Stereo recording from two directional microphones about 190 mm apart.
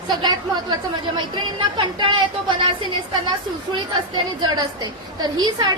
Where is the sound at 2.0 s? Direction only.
25° right (ahead or behind).